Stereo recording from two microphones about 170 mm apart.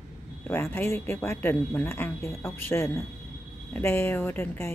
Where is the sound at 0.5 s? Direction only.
15° left (ahead or behind).